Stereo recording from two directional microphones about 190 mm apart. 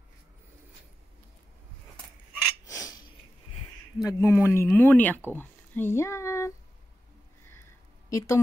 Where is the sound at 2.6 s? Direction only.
20° left (ahead or behind).